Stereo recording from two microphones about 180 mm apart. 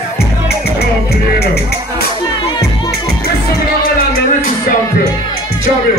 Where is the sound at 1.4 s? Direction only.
60° left (ahead or behind).